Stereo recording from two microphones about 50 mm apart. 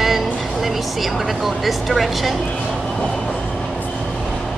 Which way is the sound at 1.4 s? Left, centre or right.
Centre.